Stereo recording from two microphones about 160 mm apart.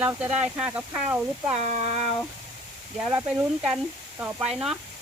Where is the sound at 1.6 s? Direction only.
40° right (ahead or behind).